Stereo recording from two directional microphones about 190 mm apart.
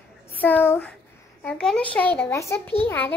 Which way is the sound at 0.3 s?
10° left (ahead or behind).